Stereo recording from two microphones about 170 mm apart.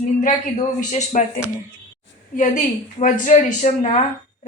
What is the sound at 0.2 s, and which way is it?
A woman's voice, 45° left (ahead or behind).